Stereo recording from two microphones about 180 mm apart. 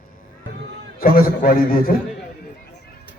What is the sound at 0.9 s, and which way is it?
A man's voice, 55° left (ahead or behind).